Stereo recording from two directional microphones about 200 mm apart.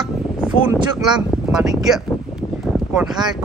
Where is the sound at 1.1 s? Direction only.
5° right (ahead or behind).